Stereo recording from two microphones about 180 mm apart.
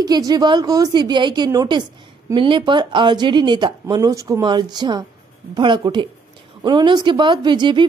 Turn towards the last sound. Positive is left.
turn(degrees=-25)  # may be behind; listen again after turning